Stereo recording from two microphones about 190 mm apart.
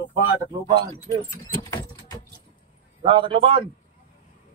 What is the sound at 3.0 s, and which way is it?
Speech, 30° right (ahead or behind).